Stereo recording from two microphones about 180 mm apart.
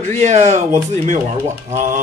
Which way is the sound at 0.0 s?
40° right (ahead or behind).